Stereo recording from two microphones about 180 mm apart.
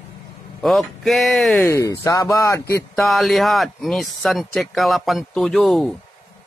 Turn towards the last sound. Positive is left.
turn(degrees=0)  # may be behind; listen again after turning